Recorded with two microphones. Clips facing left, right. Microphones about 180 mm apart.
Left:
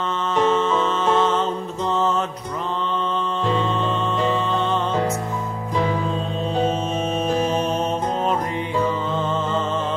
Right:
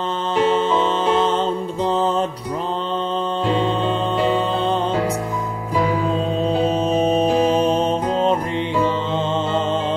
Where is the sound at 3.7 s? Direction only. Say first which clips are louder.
Right 3 dB; 35° right (ahead or behind).